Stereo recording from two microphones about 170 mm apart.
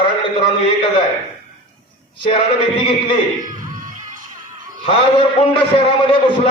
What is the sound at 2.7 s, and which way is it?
Speech, 30° left (ahead or behind).